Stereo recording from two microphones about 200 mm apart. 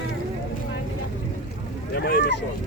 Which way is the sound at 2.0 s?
50° left (ahead or behind).